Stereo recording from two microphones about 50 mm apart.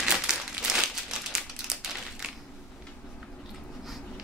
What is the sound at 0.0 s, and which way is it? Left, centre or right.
Crumpling, centre.